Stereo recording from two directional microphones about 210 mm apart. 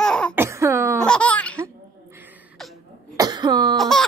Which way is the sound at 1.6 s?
10° right (ahead or behind).